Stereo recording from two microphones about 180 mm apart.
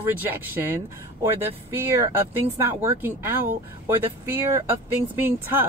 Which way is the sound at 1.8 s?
15° right (ahead or behind).